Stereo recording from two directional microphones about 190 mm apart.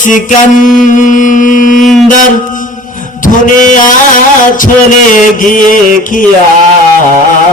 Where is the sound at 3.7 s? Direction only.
45° left (ahead or behind).